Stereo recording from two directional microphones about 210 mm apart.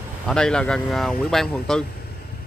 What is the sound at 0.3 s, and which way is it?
Speech, 5° left (ahead or behind).